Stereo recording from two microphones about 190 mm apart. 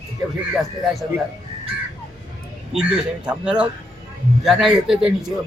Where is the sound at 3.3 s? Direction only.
5° right (ahead or behind).